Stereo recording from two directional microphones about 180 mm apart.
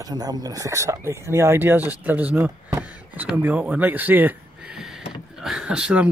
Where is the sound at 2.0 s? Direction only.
10° right (ahead or behind).